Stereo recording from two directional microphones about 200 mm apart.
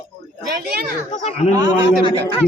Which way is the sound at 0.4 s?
50° right (ahead or behind).